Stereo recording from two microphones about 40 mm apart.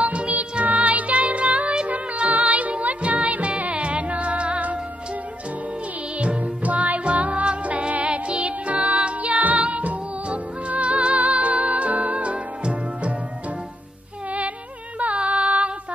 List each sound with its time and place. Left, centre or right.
0.0 s music: right
1.9 s music: right
6.1 s music: right
15.1 s music: right